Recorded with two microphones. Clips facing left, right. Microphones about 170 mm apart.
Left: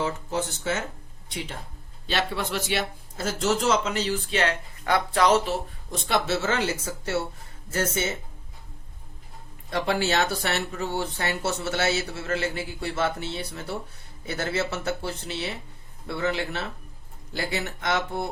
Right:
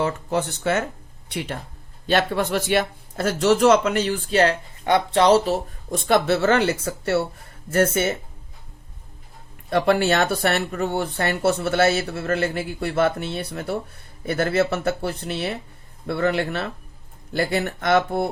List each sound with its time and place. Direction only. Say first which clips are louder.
0.0 s speech: right 5 dB; 60° right (ahead or behind)
2.0 s speech: right 7 dB; 50° right (ahead or behind)
4.4 s speech: right 11 dB; 35° right (ahead or behind)
4.9 s speech: right 5 dB; 25° right (ahead or behind)
5.9 s speech: right 6 dB; 50° right (ahead or behind)
9.6 s speech: right 7 dB; 60° right (ahead or behind)